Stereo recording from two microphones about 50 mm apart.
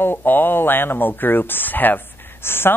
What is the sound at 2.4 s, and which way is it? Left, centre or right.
Speech, left.